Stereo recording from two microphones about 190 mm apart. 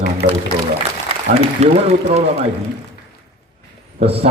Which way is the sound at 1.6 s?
35° right (ahead or behind).